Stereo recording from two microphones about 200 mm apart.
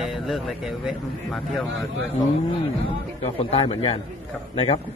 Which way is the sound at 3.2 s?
30° left (ahead or behind).